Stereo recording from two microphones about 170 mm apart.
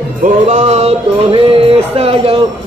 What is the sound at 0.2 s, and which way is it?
Music, 45° right (ahead or behind).